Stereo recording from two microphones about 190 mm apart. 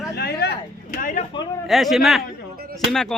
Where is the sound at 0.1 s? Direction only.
60° left (ahead or behind).